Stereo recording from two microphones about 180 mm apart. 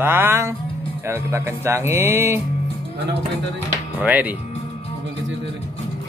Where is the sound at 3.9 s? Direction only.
10° right (ahead or behind).